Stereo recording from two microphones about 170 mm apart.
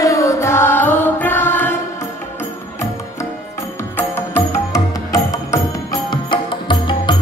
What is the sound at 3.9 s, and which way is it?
Music, 15° left (ahead or behind).